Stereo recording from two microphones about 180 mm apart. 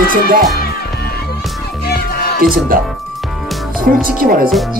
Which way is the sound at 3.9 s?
50° right (ahead or behind).